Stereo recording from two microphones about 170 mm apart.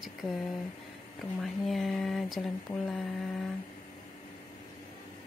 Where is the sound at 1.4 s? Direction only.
Centre (ahead or behind).